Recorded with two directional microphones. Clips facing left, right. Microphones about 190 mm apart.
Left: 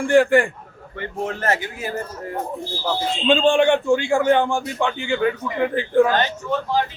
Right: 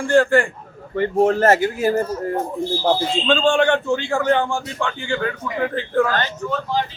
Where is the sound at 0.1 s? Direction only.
15° left (ahead or behind).